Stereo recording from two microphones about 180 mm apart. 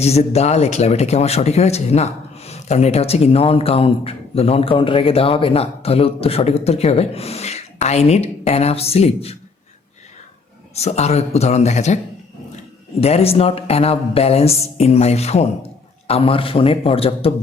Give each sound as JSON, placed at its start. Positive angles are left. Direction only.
{"t": 0.0, "sound": "speech", "side_deg": 35}
{"t": 10.8, "sound": "speech", "side_deg": 35}
{"t": 13.0, "sound": "speech", "side_deg": 35}